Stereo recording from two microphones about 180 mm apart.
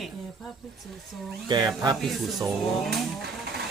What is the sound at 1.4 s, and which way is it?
Speech, 25° right (ahead or behind).